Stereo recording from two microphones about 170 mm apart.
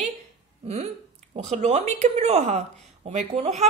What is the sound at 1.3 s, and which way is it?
Speech, 45° right (ahead or behind).